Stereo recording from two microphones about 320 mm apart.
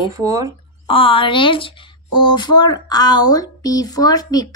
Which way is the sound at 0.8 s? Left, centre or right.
Centre.